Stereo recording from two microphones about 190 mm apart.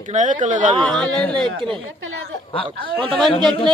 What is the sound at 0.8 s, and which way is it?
Speech, 5° left (ahead or behind).